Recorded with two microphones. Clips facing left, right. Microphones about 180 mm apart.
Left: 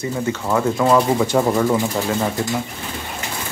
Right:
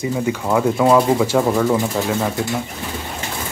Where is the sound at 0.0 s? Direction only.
10° right (ahead or behind).